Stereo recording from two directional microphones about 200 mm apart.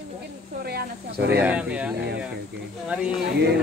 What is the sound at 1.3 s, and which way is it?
Speech, 5° right (ahead or behind).